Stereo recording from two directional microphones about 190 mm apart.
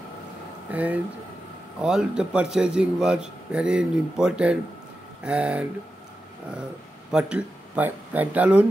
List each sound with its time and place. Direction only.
0.7 s a man's voice: 10° right (ahead or behind)
7.1 s speech: 5° right (ahead or behind)